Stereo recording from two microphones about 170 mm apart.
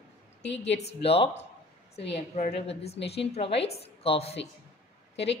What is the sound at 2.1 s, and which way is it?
Speech, 45° left (ahead or behind).